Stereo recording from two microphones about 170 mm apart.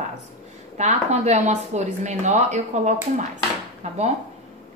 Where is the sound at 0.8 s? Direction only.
40° right (ahead or behind).